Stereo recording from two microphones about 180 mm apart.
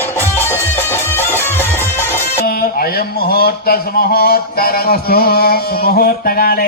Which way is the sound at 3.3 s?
60° left (ahead or behind).